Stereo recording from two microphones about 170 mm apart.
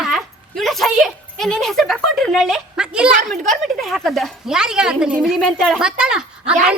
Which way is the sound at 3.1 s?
50° right (ahead or behind).